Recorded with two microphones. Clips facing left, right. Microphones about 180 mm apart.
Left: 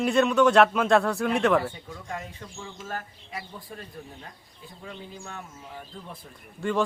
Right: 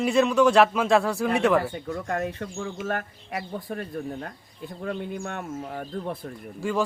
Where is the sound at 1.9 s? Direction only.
65° right (ahead or behind).